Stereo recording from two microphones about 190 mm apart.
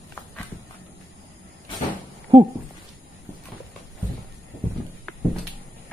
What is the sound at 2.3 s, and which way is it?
Speech, 30° right (ahead or behind).